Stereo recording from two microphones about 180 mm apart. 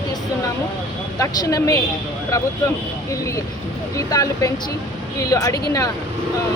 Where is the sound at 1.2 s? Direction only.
20° left (ahead or behind).